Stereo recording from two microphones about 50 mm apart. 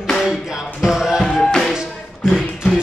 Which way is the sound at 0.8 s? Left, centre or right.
Centre.